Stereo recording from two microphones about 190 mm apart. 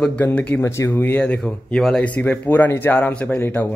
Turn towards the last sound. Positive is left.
turn(degrees=10)  # may be behind; listen again after turning